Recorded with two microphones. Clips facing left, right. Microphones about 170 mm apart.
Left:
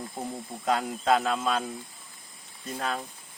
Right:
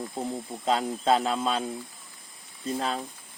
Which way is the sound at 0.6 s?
25° right (ahead or behind).